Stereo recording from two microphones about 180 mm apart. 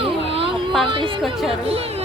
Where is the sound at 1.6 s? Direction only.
35° right (ahead or behind).